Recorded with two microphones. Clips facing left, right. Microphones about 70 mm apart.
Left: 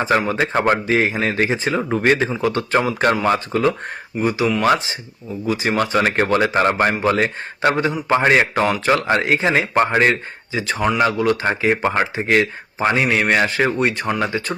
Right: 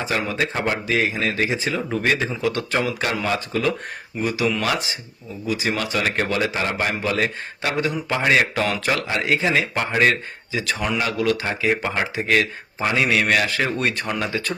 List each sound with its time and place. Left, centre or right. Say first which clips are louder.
0.2 s a man's voice: left 5 dB; left